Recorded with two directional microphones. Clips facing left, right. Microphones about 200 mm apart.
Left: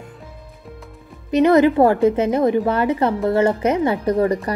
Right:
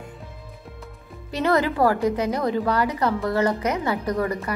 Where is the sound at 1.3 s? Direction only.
20° left (ahead or behind).